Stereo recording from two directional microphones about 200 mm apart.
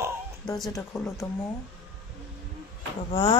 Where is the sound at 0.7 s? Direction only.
15° left (ahead or behind).